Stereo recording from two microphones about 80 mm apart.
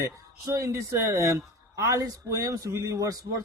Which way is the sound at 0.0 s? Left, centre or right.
Right.